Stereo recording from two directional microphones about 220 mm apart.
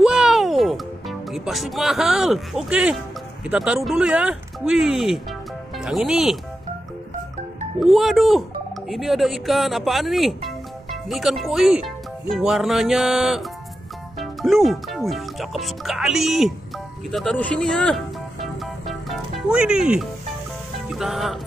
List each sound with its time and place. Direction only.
0.0 s music: centre (ahead or behind)
3.4 s speech: 5° right (ahead or behind)
7.8 s speech: centre (ahead or behind)
17.1 s music: 5° left (ahead or behind)
20.9 s speech: centre (ahead or behind)